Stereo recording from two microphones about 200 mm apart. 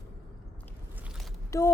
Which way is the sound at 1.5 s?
15° left (ahead or behind).